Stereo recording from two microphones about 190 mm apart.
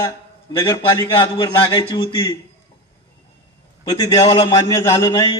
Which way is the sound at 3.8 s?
20° left (ahead or behind).